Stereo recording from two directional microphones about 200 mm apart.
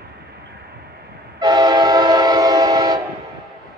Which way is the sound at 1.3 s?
20° right (ahead or behind).